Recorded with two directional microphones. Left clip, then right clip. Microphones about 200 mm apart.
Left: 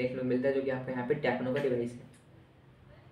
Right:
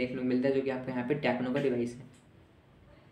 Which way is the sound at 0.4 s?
45° right (ahead or behind).